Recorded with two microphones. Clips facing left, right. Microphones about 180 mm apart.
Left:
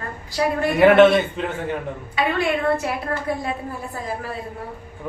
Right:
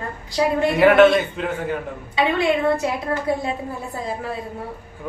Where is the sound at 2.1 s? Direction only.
20° right (ahead or behind).